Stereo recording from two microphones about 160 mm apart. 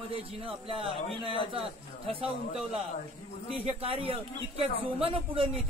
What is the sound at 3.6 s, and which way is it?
A man's voice, 35° right (ahead or behind).